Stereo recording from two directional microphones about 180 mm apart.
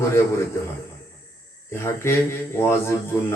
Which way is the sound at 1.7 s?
15° left (ahead or behind).